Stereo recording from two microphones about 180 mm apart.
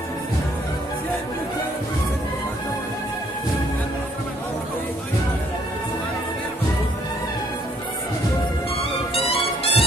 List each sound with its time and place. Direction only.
9.1 s music: 30° left (ahead or behind)